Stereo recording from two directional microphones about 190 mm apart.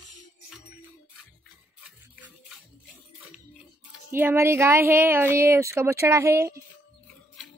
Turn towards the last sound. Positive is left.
turn(degrees=-15)  # may be behind; listen again after turning